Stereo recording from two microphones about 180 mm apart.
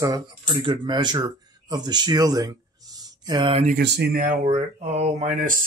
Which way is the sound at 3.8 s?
60° right (ahead or behind).